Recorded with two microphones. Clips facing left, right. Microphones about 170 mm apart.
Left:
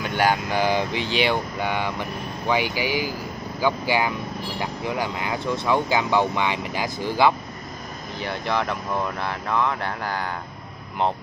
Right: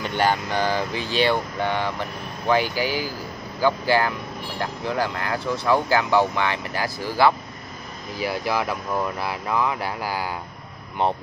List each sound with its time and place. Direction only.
0.0 s speech: 10° left (ahead or behind)
8.2 s speech: 5° right (ahead or behind)